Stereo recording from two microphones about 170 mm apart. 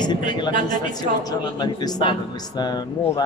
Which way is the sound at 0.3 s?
30° left (ahead or behind).